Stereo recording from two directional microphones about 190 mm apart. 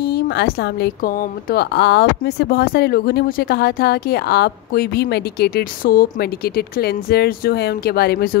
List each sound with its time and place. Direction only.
0.0 s a woman's voice: 65° left (ahead or behind)